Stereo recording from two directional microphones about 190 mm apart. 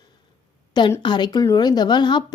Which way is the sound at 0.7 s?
25° left (ahead or behind).